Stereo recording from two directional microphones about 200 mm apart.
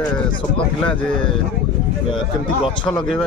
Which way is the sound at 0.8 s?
5° left (ahead or behind).